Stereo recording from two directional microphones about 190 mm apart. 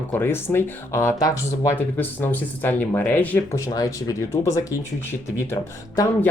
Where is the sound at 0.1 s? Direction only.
10° left (ahead or behind).